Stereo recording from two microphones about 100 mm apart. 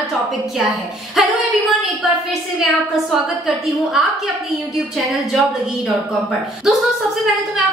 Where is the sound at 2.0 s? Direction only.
5° right (ahead or behind).